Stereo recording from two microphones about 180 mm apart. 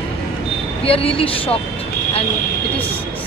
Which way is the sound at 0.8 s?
30° left (ahead or behind).